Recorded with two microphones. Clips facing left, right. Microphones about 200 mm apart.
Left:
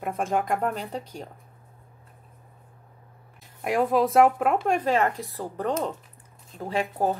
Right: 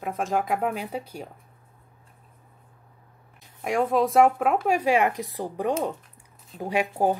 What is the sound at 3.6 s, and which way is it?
A woman's voice, centre (ahead or behind).